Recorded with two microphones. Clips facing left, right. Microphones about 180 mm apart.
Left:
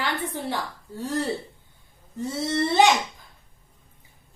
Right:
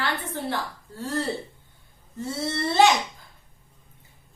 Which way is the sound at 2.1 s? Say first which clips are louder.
Left 3 dB; 15° left (ahead or behind).